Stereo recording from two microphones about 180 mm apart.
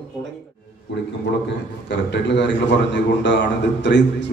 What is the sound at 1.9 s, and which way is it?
A man's voice, 75° left (ahead or behind).